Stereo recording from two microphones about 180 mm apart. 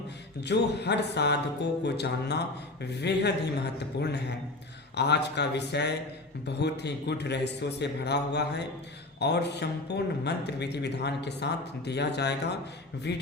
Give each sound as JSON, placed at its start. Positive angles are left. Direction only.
{"t": 0.4, "sound": "speech", "side_deg": 70}